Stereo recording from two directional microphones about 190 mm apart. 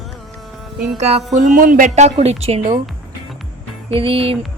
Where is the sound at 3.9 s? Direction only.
30° right (ahead or behind).